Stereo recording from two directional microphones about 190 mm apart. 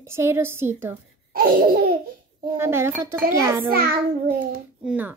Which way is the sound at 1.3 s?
50° right (ahead or behind).